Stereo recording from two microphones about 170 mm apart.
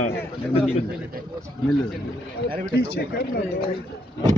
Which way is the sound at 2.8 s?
65° left (ahead or behind).